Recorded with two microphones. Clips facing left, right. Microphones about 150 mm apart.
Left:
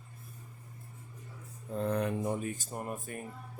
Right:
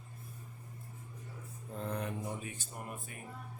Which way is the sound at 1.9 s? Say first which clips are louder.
Left 7 dB; 70° left (ahead or behind).